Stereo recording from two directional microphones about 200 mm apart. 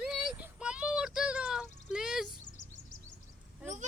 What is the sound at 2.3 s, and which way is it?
Bird, 40° left (ahead or behind).